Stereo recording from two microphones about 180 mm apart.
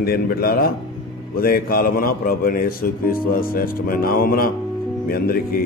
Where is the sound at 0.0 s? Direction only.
55° left (ahead or behind).